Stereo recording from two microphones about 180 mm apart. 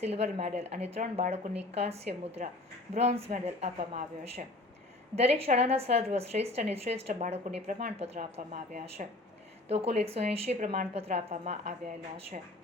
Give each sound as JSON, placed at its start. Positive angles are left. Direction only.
{"t": 0.0, "sound": "a woman's voice", "side_deg": -35}